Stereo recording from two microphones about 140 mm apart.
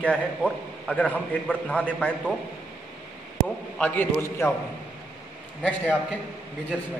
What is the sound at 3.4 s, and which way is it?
A man's voice, 10° left (ahead or behind).